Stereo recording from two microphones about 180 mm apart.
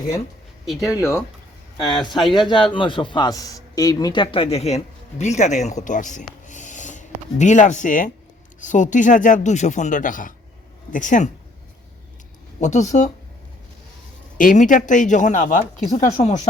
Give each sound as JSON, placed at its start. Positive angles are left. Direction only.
{"t": 0.7, "sound": "speech", "side_deg": 0}
{"t": 2.3, "sound": "a man's voice", "side_deg": 25}
{"t": 6.5, "sound": "a sound", "side_deg": 45}
{"t": 8.6, "sound": "speech", "side_deg": 45}
{"t": 12.5, "sound": "speech", "side_deg": 40}
{"t": 14.3, "sound": "speech", "side_deg": 45}